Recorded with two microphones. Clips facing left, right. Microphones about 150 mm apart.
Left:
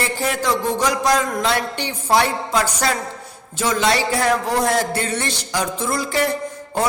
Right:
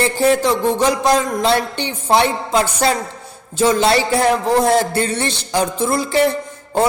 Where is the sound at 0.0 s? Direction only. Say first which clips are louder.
Right 7 dB; 30° right (ahead or behind).